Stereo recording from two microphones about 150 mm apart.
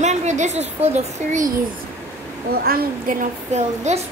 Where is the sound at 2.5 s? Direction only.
85° right.